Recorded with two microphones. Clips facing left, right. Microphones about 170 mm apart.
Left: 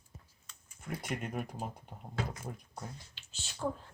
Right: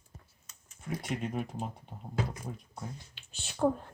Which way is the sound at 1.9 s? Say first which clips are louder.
Right 2 dB; 5° right (ahead or behind).